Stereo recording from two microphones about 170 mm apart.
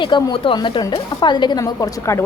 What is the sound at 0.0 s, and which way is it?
Speech, 30° left (ahead or behind).